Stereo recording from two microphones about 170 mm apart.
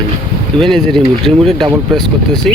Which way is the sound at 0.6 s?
5° left (ahead or behind).